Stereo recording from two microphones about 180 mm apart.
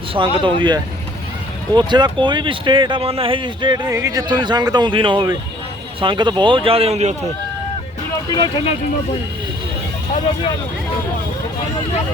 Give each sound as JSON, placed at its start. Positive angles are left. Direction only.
{"t": 0.1, "sound": "speech", "side_deg": -25}
{"t": 8.3, "sound": "speech", "side_deg": 20}